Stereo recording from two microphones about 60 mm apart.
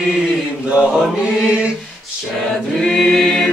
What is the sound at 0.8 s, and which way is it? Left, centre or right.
Choir, centre.